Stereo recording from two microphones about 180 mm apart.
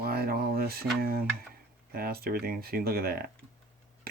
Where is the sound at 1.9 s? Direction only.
55° right (ahead or behind).